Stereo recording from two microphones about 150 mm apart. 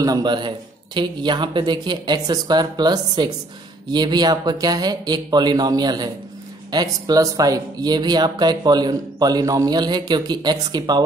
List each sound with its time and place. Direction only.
0.0 s speech: 25° right (ahead or behind)